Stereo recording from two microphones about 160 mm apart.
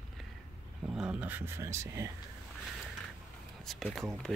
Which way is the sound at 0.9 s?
5° right (ahead or behind).